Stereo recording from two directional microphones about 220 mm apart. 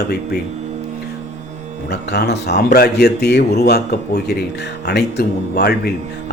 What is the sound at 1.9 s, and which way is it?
A man's voice, 50° left (ahead or behind).